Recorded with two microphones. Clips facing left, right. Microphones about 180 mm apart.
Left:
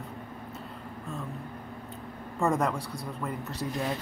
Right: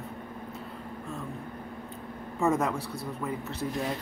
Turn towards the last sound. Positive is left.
turn(degrees=0)  # may be behind; listen again after turning